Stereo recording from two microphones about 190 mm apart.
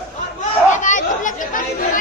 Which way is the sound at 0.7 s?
40° left (ahead or behind).